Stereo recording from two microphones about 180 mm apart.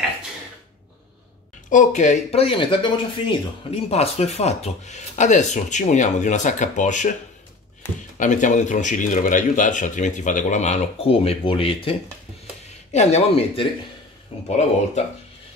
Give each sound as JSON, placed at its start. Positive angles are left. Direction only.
{"t": 1.7, "sound": "speech", "side_deg": 45}
{"t": 8.2, "sound": "speech", "side_deg": 45}